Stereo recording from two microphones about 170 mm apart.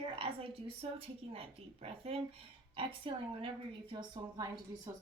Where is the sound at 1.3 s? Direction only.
35° right (ahead or behind).